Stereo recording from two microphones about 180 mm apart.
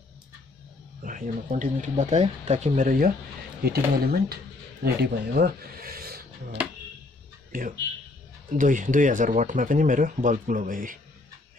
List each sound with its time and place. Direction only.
1.0 s speech: 50° right (ahead or behind)
3.6 s speech: 60° right (ahead or behind)